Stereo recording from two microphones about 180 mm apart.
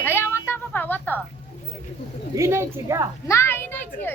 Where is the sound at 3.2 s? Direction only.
15° left (ahead or behind).